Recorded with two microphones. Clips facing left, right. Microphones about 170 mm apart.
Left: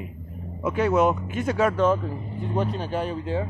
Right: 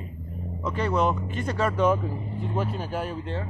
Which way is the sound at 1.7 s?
10° right (ahead or behind).